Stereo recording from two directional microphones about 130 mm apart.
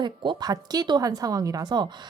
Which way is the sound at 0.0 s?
35° right (ahead or behind).